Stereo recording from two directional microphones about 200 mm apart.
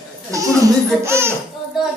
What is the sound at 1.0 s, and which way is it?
Speech, 10° right (ahead or behind).